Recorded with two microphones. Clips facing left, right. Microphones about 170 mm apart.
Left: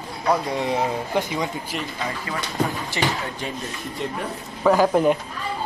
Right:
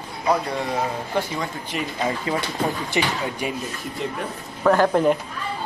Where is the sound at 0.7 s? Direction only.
15° left (ahead or behind).